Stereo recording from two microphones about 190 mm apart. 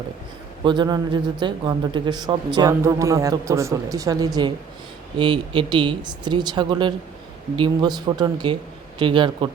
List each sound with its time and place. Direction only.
0.6 s a man's voice: 25° right (ahead or behind)